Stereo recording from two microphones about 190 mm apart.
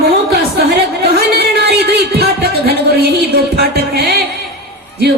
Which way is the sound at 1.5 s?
60° right (ahead or behind).